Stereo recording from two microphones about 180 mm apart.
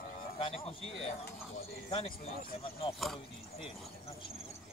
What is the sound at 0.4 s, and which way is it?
Speech, 30° left (ahead or behind).